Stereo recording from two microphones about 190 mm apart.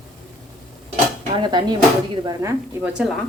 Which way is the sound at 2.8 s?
5° right (ahead or behind).